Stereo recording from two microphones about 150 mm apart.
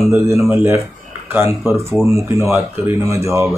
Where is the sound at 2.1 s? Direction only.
20° right (ahead or behind).